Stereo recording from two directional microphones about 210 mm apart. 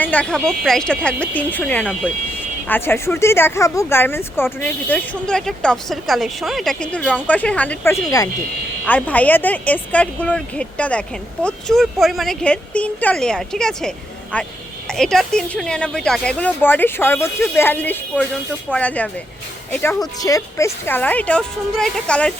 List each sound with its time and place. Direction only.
0.0 s speech: 5° left (ahead or behind)